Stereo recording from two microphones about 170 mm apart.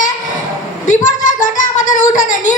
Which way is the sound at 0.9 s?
50° left (ahead or behind).